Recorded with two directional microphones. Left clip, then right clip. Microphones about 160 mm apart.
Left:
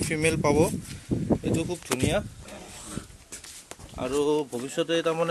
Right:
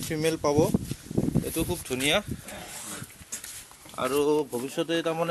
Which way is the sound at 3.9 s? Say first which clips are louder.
Right 2 dB; 5° right (ahead or behind).